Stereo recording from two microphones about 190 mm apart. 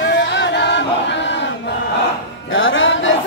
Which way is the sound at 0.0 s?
70° left (ahead or behind).